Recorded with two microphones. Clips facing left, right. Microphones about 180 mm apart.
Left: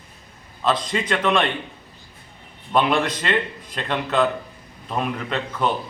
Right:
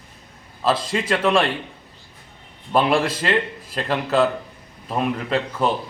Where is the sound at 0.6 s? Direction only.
5° right (ahead or behind).